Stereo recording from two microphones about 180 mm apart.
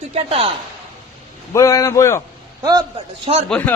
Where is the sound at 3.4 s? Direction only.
5° left (ahead or behind).